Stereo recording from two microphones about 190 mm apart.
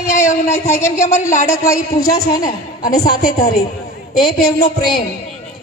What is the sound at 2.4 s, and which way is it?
A woman's voice, 45° left (ahead or behind).